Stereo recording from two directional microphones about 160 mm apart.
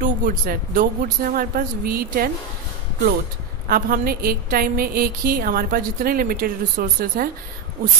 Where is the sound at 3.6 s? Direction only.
65° right (ahead or behind).